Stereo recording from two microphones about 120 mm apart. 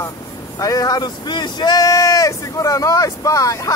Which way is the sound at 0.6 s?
30° left (ahead or behind).